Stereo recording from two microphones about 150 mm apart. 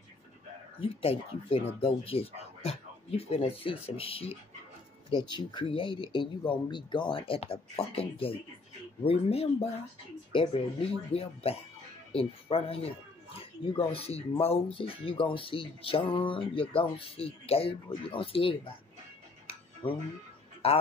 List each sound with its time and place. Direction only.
0.7 s speech: 40° left (ahead or behind)
19.4 s tick-tock: 35° left (ahead or behind)
20.6 s speech: 40° left (ahead or behind)